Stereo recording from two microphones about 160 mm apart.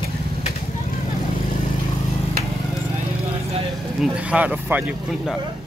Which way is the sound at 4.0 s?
10° right (ahead or behind).